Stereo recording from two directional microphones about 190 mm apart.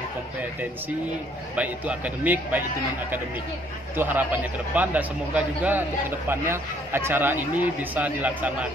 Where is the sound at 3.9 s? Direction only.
10° right (ahead or behind).